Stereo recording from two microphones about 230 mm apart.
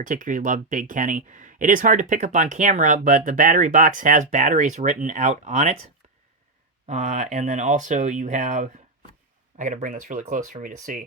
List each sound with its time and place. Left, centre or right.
0.0 s speech: right
6.8 s speech: right